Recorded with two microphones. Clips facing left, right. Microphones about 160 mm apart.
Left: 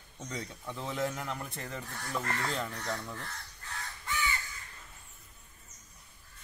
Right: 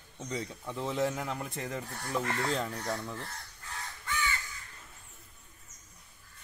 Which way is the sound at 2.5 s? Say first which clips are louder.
Right 3 dB; 30° right (ahead or behind).